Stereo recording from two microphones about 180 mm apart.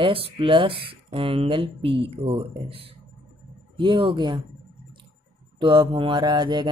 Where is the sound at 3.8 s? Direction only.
30° right (ahead or behind).